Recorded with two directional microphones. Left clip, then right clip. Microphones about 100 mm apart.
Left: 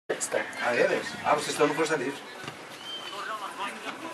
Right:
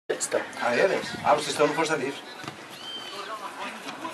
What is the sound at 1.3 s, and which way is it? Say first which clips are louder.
Speech: right 2 dB; 15° right (ahead or behind).